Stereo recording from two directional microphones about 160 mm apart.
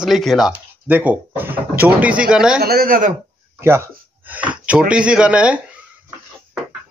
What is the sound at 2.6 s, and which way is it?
Speech, 65° right (ahead or behind).